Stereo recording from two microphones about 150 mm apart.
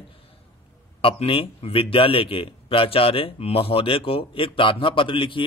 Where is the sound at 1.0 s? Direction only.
40° left (ahead or behind).